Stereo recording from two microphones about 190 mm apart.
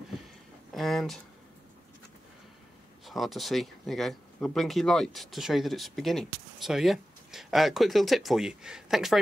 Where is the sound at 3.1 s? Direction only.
Centre (ahead or behind).